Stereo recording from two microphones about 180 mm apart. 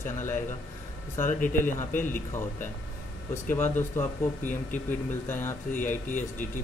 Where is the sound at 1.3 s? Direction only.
50° left (ahead or behind).